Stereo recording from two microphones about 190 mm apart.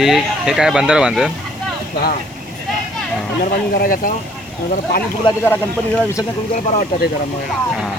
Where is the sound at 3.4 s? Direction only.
50° left (ahead or behind).